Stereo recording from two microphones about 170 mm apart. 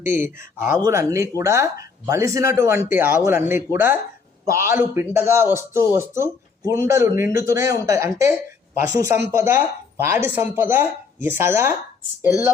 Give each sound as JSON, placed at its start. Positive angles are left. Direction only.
{"t": 0.0, "sound": "a man's voice", "side_deg": -15}